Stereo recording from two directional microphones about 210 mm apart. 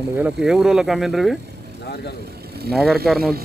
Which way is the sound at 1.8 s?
50° left (ahead or behind).